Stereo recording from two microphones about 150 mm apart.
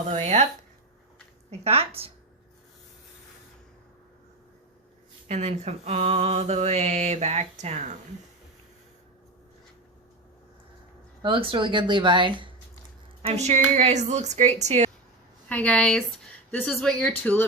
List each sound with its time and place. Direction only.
0.1 s mantra: 50° right (ahead or behind)
1.5 s speech: 40° right (ahead or behind)
5.3 s mantra: 45° right (ahead or behind)
11.2 s speech: 35° right (ahead or behind)
13.2 s mantra: 45° right (ahead or behind)
15.4 s a woman's voice: 10° left (ahead or behind)